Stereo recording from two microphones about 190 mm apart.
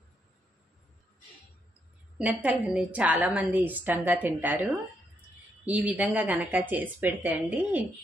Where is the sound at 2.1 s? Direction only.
5° right (ahead or behind).